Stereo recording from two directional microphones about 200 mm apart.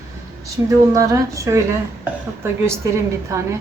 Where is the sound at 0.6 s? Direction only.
15° right (ahead or behind).